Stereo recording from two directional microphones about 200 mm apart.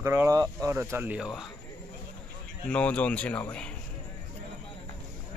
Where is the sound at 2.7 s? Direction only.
5° left (ahead or behind).